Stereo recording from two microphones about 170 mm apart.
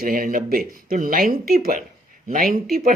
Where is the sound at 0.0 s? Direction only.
55° right (ahead or behind).